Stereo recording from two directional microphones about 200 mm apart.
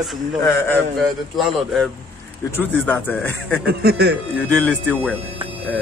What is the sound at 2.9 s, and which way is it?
Speech, 10° left (ahead or behind).